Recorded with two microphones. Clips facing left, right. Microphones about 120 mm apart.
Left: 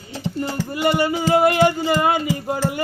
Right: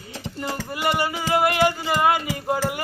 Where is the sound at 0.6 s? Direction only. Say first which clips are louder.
Left 5 dB; 25° left (ahead or behind).